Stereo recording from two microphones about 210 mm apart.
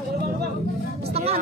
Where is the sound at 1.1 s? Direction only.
30° right (ahead or behind).